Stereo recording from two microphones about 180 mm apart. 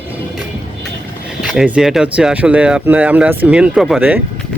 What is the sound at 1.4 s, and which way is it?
Speech, 5° right (ahead or behind).